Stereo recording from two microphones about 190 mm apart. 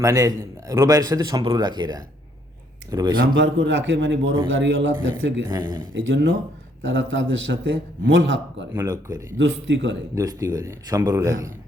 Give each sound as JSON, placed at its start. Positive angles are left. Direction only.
{"t": 0.0, "sound": "a man's voice", "side_deg": -15}
{"t": 3.2, "sound": "a man's voice", "side_deg": -70}
{"t": 5.5, "sound": "a man's voice", "side_deg": -20}
{"t": 5.9, "sound": "a man's voice", "side_deg": -80}
{"t": 8.7, "sound": "a man's voice", "side_deg": -15}
{"t": 9.4, "sound": "a man's voice", "side_deg": -75}
{"t": 10.2, "sound": "a man's voice", "side_deg": -20}